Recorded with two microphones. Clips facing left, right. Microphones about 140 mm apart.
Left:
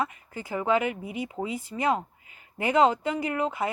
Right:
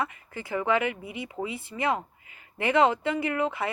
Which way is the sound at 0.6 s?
40° left (ahead or behind).